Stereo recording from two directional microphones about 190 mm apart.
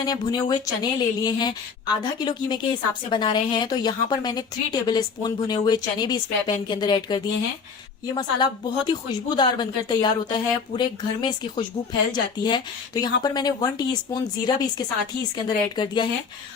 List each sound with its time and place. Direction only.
0.0 s a woman's voice: 20° left (ahead or behind)